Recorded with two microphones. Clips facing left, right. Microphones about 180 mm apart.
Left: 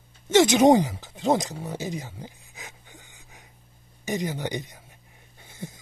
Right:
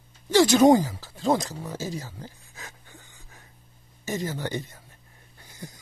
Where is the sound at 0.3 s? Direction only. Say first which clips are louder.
Even; 20° left (ahead or behind).